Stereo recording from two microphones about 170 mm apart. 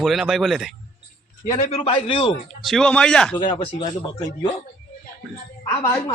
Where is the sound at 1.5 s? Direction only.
35° left (ahead or behind).